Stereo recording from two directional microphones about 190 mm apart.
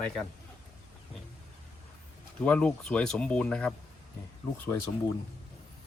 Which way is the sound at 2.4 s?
5° left (ahead or behind).